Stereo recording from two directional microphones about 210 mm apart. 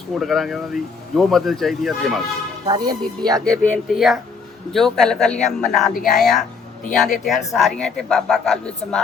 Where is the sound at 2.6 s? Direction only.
20° right (ahead or behind).